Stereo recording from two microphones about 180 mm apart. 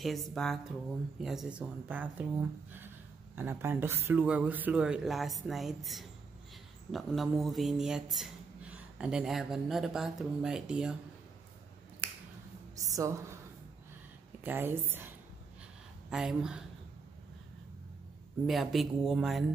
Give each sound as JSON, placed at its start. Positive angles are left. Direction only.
{"t": 0.0, "sound": "speech", "side_deg": 0}
{"t": 3.3, "sound": "speech", "side_deg": -10}
{"t": 12.0, "sound": "finger snapping", "side_deg": -10}
{"t": 12.7, "sound": "a woman's voice", "side_deg": -20}
{"t": 14.4, "sound": "a woman's voice", "side_deg": -10}
{"t": 18.5, "sound": "speech", "side_deg": 0}